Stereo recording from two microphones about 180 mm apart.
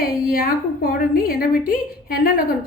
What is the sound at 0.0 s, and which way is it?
A woman's voice, 55° left (ahead or behind).